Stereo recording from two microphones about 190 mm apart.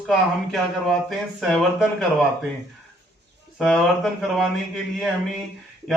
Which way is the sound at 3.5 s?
Centre (ahead or behind).